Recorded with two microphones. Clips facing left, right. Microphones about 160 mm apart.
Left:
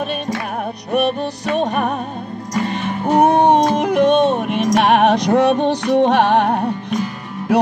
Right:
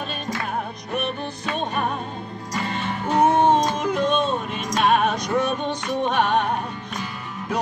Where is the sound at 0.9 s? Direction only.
70° left (ahead or behind).